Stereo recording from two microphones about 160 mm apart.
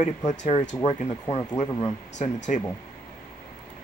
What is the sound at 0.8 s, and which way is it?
Speech, 25° left (ahead or behind).